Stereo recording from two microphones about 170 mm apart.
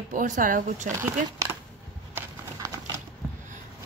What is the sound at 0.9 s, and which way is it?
Speech, 15° right (ahead or behind).